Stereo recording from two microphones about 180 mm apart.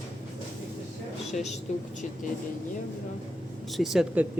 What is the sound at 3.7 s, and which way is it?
Speech, centre (ahead or behind).